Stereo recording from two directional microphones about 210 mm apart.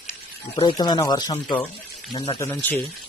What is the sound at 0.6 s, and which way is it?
Speech, 20° left (ahead or behind).